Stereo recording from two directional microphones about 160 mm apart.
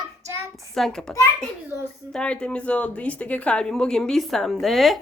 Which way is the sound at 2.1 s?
5° left (ahead or behind).